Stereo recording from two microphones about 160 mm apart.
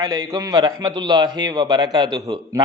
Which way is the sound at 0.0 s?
25° right (ahead or behind).